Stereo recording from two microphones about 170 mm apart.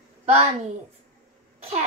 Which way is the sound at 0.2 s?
40° right (ahead or behind).